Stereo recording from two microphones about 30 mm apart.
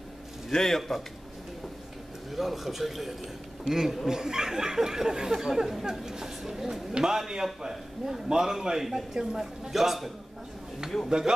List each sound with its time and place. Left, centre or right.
0.5 s speech: centre
2.3 s a man's voice: centre
6.9 s a man's voice: right; by 10.1 s centre
11.1 s a man's voice: right